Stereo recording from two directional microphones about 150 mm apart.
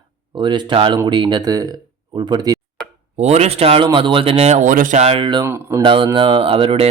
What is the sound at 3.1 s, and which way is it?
Speech, 45° right (ahead or behind).